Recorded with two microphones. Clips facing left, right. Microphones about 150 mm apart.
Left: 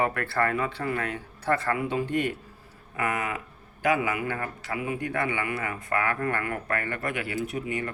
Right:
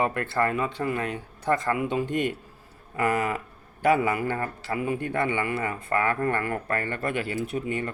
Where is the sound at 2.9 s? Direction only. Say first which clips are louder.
Right 4 dB; 35° right (ahead or behind).